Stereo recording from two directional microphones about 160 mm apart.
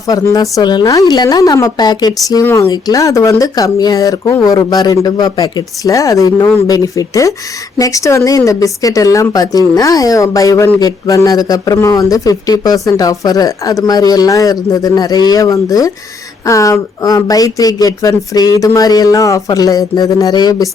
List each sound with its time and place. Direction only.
0.1 s speech: 20° left (ahead or behind)
2.4 s speech: 15° left (ahead or behind)